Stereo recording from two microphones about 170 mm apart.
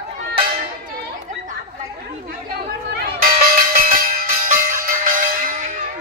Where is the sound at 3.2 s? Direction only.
55° right (ahead or behind).